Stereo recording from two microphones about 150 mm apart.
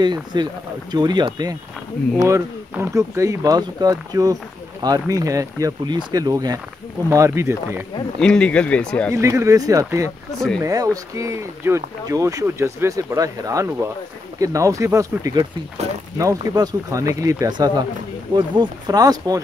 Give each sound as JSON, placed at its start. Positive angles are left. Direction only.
{"t": 0.0, "sound": "speech", "side_deg": -30}
{"t": 2.7, "sound": "speech", "side_deg": -15}
{"t": 8.2, "sound": "speech", "side_deg": 5}
{"t": 9.1, "sound": "speech", "side_deg": -20}